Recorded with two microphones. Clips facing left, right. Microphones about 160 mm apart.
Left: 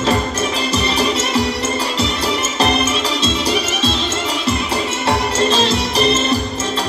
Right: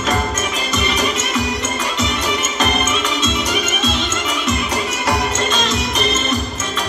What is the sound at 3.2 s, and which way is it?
Music, 35° left (ahead or behind).